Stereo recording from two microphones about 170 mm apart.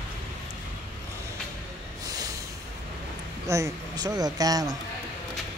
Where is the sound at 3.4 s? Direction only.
20° right (ahead or behind).